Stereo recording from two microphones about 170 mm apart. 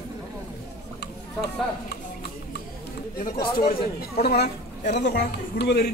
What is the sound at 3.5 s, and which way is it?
Speech, 60° left (ahead or behind).